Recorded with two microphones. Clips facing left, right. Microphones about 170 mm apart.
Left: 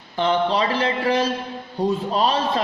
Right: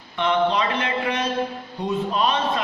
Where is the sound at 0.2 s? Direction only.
30° left (ahead or behind).